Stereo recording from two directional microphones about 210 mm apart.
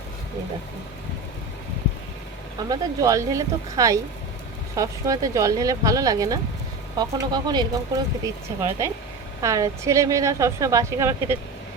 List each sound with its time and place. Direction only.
2.6 s speech: 15° right (ahead or behind)